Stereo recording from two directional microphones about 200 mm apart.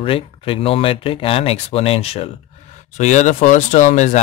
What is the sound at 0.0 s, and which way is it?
Speech, 25° left (ahead or behind).